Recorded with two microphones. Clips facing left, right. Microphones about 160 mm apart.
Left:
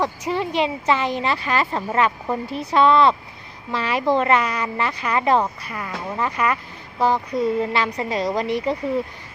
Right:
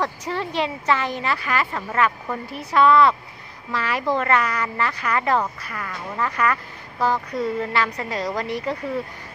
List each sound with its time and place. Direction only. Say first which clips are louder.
0.0 s speech: left 3 dB; 15° left (ahead or behind)